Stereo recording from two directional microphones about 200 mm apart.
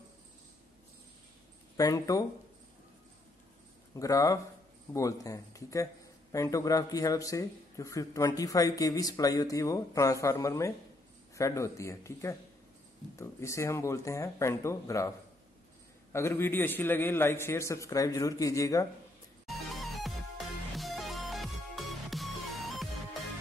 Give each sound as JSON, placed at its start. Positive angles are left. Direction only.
{"t": 1.8, "sound": "speech", "side_deg": 15}
{"t": 3.9, "sound": "speech", "side_deg": 15}
{"t": 19.4, "sound": "music", "side_deg": 0}